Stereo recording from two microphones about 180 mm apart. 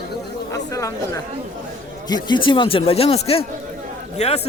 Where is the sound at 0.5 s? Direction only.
20° left (ahead or behind).